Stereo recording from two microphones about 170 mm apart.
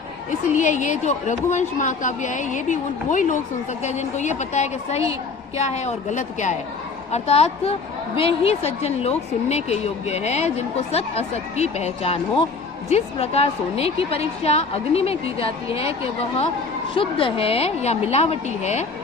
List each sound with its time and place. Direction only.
0.3 s a woman's voice: 45° left (ahead or behind)